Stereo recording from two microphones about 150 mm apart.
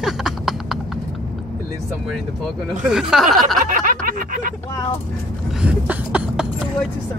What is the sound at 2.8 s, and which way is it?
Speech, 5° right (ahead or behind).